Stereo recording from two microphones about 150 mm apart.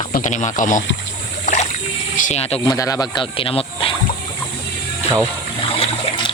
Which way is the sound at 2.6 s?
25° left (ahead or behind).